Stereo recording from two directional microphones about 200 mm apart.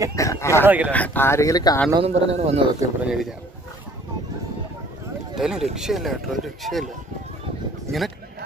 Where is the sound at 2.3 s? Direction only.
30° right (ahead or behind).